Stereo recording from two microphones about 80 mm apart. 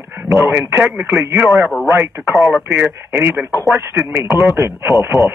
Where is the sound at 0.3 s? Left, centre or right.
Right.